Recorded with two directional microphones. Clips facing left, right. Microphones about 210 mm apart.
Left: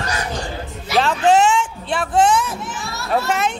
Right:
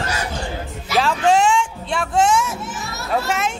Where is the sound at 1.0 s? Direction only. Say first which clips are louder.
Left 2 dB; centre (ahead or behind).